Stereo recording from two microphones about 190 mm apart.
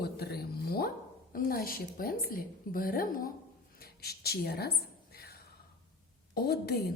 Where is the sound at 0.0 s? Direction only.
55° left (ahead or behind).